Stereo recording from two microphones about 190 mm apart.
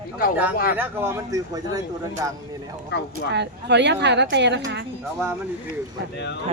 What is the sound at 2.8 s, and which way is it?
Speech, 60° left (ahead or behind).